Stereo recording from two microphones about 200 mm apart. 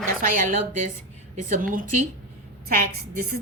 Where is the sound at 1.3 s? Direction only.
40° right (ahead or behind).